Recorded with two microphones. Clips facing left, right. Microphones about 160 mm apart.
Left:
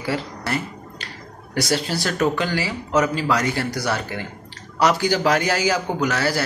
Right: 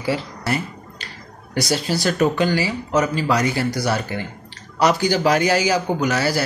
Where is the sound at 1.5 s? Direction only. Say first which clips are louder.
Right 1 dB; 5° right (ahead or behind).